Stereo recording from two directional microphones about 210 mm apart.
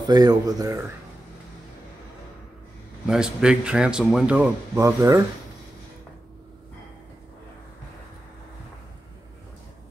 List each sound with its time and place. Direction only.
0.0 s speech: 20° right (ahead or behind)
3.1 s speech: 5° right (ahead or behind)